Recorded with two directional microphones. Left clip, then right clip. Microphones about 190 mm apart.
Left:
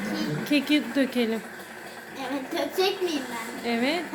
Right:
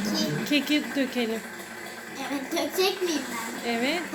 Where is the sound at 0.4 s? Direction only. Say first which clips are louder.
Left 3 dB; 10° left (ahead or behind).